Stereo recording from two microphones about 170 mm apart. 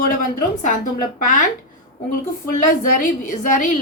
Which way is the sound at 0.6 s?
45° left (ahead or behind).